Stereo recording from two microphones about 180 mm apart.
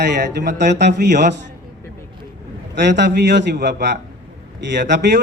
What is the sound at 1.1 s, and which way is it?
Speech, 45° right (ahead or behind).